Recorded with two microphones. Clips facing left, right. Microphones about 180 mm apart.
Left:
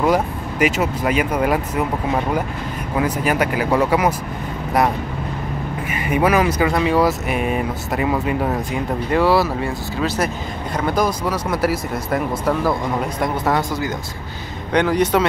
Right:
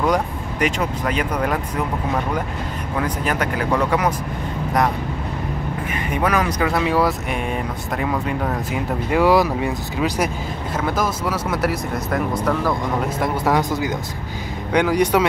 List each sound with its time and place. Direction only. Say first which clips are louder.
0.0 s speech: left 2 dB; 5° left (ahead or behind)
3.0 s speech: left 4 dB; 10° left (ahead or behind)
5.9 s speech: left 4 dB; 10° left (ahead or behind)
8.7 s speech: right 1 dB; 10° right (ahead or behind)
10.8 s speech: left 3 dB; 5° right (ahead or behind)
13.6 s speech: right 1 dB; 20° right (ahead or behind)